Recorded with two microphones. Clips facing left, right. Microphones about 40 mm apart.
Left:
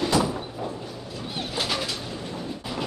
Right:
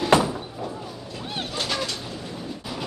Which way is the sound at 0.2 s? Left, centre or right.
Centre.